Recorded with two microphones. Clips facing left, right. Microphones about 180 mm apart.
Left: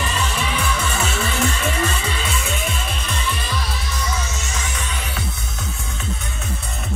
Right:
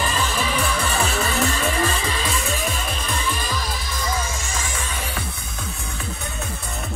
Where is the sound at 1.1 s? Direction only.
35° right (ahead or behind).